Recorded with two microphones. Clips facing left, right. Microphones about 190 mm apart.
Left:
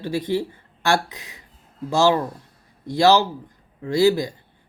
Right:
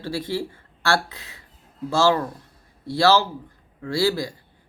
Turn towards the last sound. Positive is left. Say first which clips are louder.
# left 5 dB
turn(degrees=20)  # may be behind; listen again after turning